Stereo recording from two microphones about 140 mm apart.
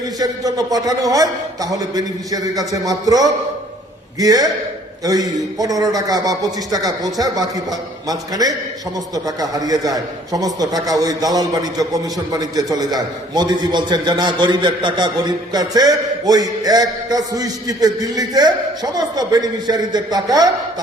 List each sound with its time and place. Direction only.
0.2 s a man's voice: 25° right (ahead or behind)